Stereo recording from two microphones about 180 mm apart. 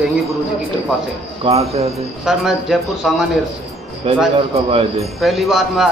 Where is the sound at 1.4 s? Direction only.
35° right (ahead or behind).